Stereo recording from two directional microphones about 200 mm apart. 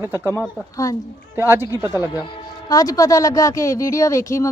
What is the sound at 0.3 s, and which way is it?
Speech, 15° left (ahead or behind).